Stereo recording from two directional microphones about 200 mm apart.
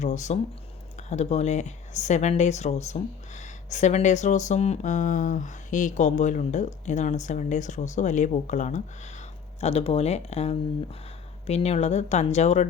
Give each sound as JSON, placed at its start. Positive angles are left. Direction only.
{"t": 0.0, "sound": "speech", "side_deg": 35}